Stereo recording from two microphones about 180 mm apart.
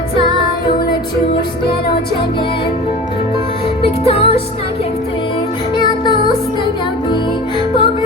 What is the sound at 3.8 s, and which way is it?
Music, 30° left (ahead or behind).